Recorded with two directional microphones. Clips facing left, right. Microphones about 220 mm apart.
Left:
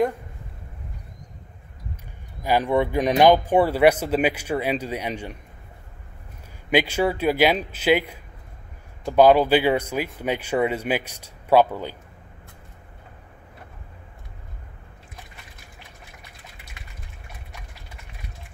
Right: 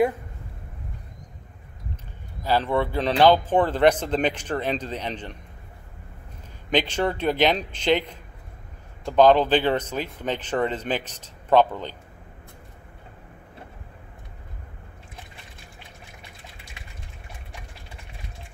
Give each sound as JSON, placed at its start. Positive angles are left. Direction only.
{"t": 2.4, "sound": "speech", "side_deg": 15}
{"t": 6.7, "sound": "speech", "side_deg": 10}